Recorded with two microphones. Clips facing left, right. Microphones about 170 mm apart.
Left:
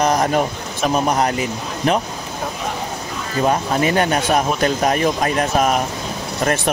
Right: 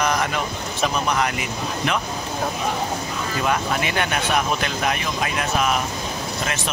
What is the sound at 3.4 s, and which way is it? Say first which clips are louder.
Speech: left 6 dB; 35° left (ahead or behind).